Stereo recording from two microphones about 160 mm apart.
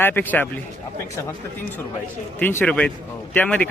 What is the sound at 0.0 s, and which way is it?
Speech, 10° left (ahead or behind).